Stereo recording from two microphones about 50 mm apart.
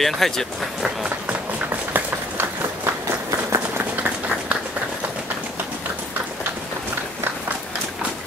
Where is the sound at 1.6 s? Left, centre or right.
Right.